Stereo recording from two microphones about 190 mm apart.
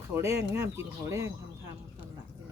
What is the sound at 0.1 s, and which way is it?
Speech, 15° right (ahead or behind).